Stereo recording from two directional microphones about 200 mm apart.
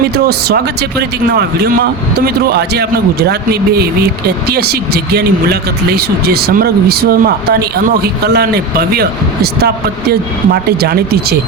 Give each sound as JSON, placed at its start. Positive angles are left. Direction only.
{"t": 0.3, "sound": "speech", "side_deg": -50}